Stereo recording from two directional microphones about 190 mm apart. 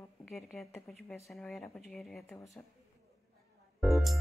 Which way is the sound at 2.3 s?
15° left (ahead or behind).